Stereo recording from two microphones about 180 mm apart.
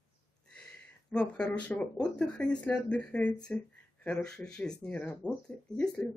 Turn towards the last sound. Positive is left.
turn(degrees=5)  # may be behind; listen again after turning